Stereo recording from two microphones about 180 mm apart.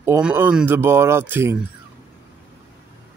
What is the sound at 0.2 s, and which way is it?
Speech, 10° right (ahead or behind).